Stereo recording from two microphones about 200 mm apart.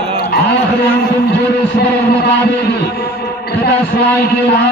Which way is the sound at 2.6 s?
55° left (ahead or behind).